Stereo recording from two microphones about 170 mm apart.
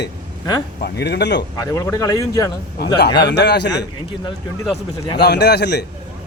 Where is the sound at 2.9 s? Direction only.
75° left (ahead or behind).